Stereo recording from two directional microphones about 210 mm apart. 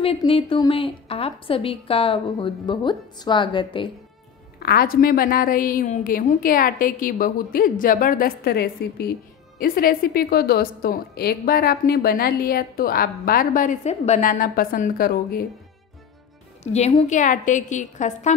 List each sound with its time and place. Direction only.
0.0 s a woman's voice: 25° left (ahead or behind)
4.6 s a woman's voice: 45° left (ahead or behind)
16.7 s a woman's voice: 30° left (ahead or behind)